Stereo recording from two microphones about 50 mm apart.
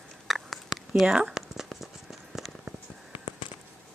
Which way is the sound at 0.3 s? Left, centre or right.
Centre.